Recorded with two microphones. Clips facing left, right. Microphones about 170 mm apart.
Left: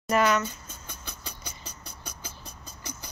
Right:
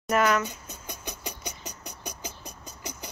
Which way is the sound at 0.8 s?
15° right (ahead or behind).